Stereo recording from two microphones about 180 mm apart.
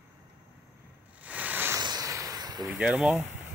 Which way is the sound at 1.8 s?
20° right (ahead or behind).